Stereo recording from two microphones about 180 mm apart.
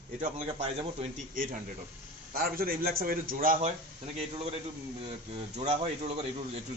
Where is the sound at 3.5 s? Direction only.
35° right (ahead or behind).